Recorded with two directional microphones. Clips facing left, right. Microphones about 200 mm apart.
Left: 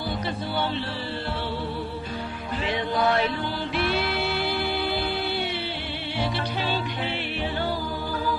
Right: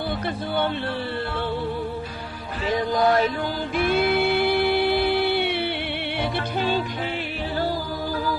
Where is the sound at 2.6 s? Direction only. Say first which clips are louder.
Right 4 dB; 40° right (ahead or behind).